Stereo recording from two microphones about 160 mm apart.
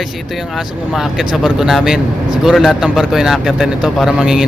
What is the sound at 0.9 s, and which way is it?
Speech, 5° right (ahead or behind).